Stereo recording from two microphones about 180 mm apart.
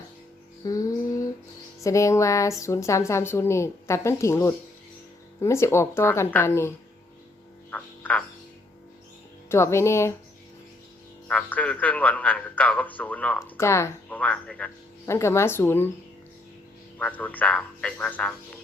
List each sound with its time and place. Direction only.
0.6 s music: 20° left (ahead or behind)
1.8 s a man's voice: 15° left (ahead or behind)
7.7 s frog: 10° left (ahead or behind)
9.5 s a man's voice: 15° left (ahead or behind)
11.3 s a man's voice: 10° left (ahead or behind)
17.0 s a man's voice: 10° left (ahead or behind)